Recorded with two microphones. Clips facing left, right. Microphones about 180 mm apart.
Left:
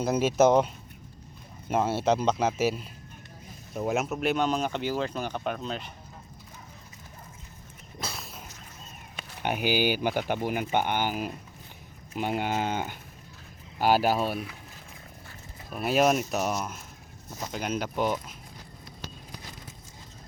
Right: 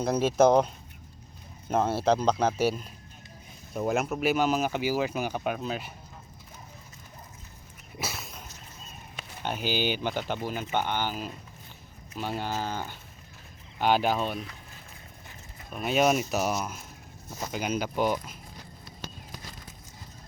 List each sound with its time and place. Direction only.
0.0 s speech: 5° left (ahead or behind)
1.7 s speech: 5° left (ahead or behind)
7.9 s a sound: 5° right (ahead or behind)
9.4 s speech: 15° left (ahead or behind)
13.7 s speech: 5° left (ahead or behind)
15.7 s speech: 5° left (ahead or behind)